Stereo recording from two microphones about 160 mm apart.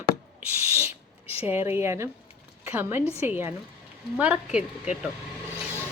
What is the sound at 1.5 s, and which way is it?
Speech, 15° right (ahead or behind).